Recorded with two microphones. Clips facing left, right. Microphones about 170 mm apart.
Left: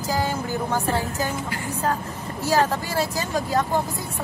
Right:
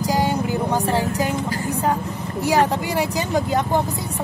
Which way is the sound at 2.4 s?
15° right (ahead or behind).